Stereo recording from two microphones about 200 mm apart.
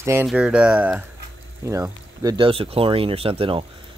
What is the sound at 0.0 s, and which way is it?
Speech, 10° right (ahead or behind).